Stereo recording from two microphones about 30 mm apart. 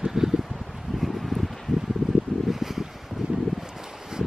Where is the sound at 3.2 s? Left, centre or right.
Right.